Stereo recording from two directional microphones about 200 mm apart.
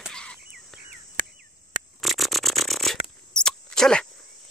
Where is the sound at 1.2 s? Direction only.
45° right (ahead or behind).